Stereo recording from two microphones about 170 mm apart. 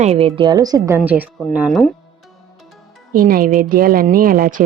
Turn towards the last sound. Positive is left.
turn(degrees=-55)  # may be behind; listen again after turning